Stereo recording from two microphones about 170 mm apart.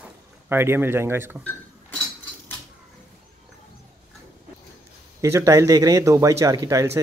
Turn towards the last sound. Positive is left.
turn(degrees=-20)  # may be behind; listen again after turning